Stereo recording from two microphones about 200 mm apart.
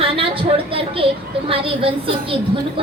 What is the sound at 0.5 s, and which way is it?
A woman's voice, 25° right (ahead or behind).